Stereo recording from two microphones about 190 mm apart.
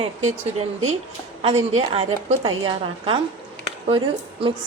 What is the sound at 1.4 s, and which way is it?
A woman's voice, 35° right (ahead or behind).